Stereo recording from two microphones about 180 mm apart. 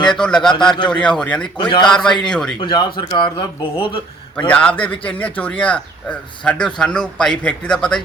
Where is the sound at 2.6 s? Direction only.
25° left (ahead or behind).